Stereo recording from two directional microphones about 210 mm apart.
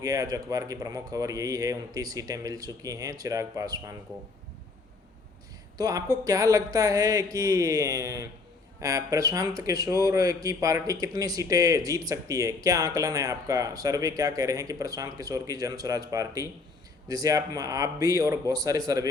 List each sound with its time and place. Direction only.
0.0 s speech: 15° right (ahead or behind)
5.7 s speech: 15° right (ahead or behind)